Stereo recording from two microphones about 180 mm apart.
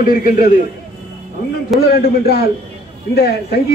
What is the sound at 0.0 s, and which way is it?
Speech, 50° left (ahead or behind).